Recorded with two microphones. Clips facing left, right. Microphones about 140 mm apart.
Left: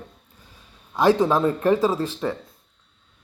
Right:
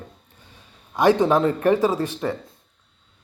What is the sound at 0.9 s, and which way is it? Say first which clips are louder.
Speech: right 1 dB; 20° right (ahead or behind).